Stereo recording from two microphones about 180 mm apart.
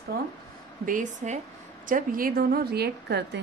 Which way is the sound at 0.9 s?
45° right (ahead or behind).